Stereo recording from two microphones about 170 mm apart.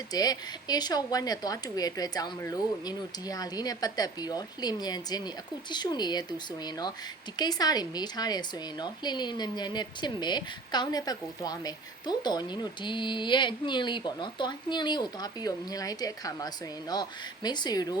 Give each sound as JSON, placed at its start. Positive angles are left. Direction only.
{"t": 0.1, "sound": "a woman's voice", "side_deg": 25}